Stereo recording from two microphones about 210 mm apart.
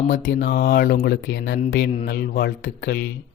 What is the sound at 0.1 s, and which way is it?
Speech, 50° left (ahead or behind).